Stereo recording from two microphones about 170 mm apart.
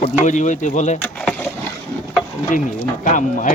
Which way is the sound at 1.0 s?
10° left (ahead or behind).